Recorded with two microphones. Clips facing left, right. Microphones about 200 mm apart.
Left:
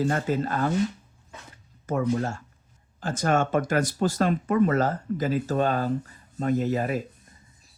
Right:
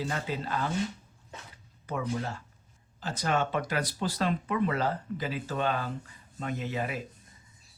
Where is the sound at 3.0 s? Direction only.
50° left (ahead or behind).